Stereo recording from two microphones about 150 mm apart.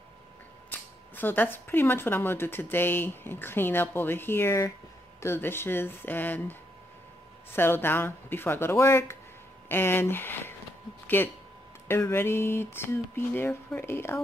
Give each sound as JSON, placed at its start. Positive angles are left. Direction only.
{"t": 0.7, "sound": "speech", "side_deg": 10}
{"t": 7.5, "sound": "speech", "side_deg": 15}